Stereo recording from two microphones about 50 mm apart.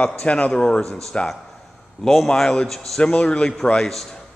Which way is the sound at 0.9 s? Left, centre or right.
Centre.